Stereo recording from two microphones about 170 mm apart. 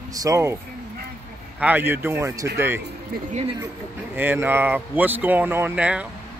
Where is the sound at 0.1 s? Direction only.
20° right (ahead or behind).